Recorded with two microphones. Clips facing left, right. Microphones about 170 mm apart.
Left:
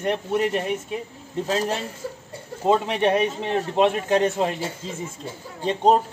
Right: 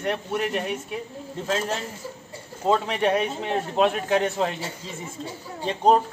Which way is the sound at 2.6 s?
15° left (ahead or behind).